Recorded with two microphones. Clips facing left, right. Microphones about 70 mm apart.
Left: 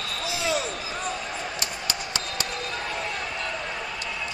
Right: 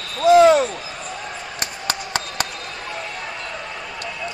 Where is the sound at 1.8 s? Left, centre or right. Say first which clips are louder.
Right 5 dB; right.